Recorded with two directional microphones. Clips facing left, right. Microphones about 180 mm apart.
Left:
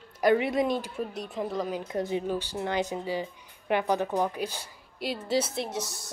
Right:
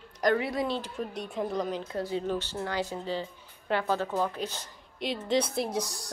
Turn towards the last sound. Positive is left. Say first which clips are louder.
# right 2 dB
turn(degrees=0)  # may be behind; listen again after turning